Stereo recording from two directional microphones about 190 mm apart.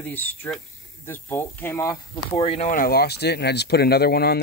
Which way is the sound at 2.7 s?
50° left (ahead or behind).